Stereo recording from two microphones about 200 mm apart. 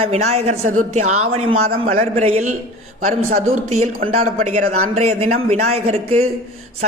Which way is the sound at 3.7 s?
30° right (ahead or behind).